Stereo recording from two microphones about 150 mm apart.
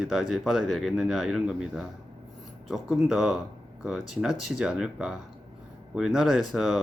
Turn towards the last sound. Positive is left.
turn(degrees=0)  # may be behind; listen again after turning